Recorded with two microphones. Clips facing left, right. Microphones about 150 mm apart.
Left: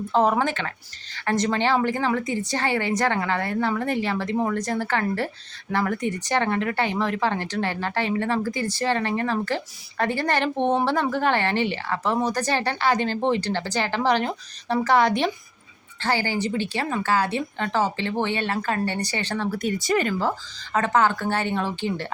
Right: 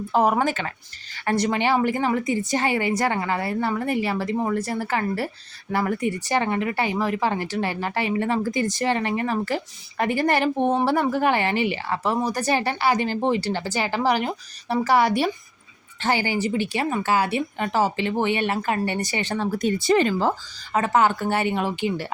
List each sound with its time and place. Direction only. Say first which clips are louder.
0.1 s speech: right 1 dB; 10° right (ahead or behind)
20.7 s speech: right 1 dB; 10° right (ahead or behind)